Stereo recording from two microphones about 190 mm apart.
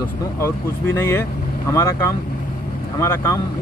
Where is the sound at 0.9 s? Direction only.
15° left (ahead or behind).